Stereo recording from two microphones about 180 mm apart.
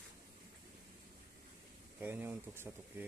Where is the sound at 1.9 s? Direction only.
10° right (ahead or behind).